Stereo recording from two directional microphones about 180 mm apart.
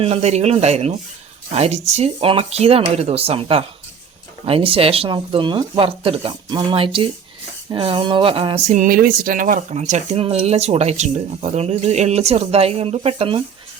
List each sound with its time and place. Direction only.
0.0 s speech: 35° right (ahead or behind)